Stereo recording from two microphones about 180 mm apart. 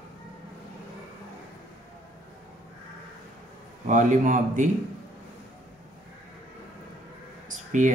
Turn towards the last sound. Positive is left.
turn(degrees=-45)  # may be behind; listen again after turning